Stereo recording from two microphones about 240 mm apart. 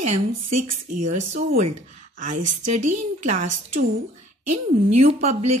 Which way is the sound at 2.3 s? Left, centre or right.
Right.